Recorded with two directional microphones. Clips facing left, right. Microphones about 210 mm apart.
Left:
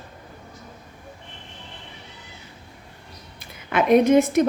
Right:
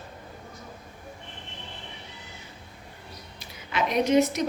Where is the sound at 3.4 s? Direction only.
55° left (ahead or behind).